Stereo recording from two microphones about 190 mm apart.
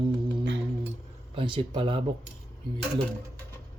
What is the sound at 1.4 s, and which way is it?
Speech, 25° right (ahead or behind).